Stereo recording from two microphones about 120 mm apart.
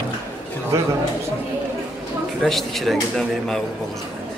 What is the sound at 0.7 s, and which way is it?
Speech, 25° right (ahead or behind).